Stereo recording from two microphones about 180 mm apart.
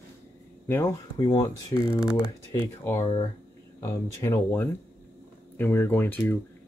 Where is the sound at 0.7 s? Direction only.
10° left (ahead or behind).